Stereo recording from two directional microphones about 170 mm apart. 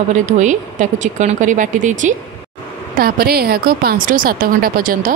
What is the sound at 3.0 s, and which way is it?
Speech, 65° right (ahead or behind).